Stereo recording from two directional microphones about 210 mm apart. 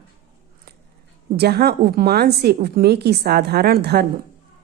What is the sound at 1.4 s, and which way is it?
A woman's voice, 50° right (ahead or behind).